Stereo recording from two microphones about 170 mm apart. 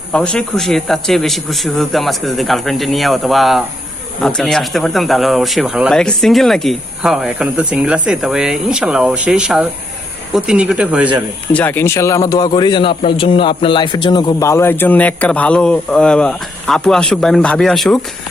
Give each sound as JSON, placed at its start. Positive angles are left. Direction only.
{"t": 0.1, "sound": "speech", "side_deg": 5}
{"t": 11.5, "sound": "a man's voice", "side_deg": 10}